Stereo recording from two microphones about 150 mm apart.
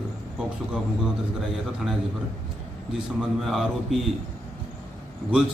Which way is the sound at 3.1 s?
Centre (ahead or behind).